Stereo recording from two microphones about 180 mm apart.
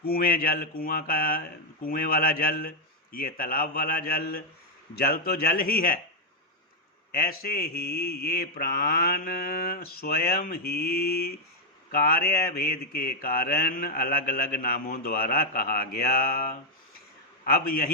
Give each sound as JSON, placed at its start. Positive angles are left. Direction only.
{"t": 0.0, "sound": "mantra", "side_deg": 55}
{"t": 7.1, "sound": "mantra", "side_deg": 60}